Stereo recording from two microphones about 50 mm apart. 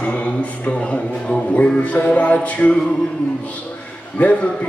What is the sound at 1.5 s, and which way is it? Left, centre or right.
A man's voice, left.